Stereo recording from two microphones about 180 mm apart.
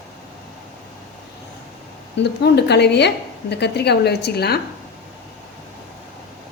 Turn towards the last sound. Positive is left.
turn(degrees=65)  # may be behind; listen again after turning